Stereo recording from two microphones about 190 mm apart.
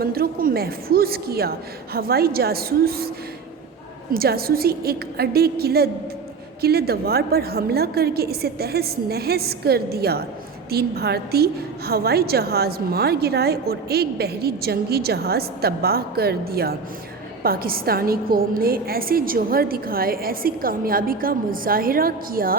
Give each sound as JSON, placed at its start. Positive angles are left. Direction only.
{"t": 0.0, "sound": "a woman's voice", "side_deg": -50}
{"t": 4.1, "sound": "a woman's voice", "side_deg": -55}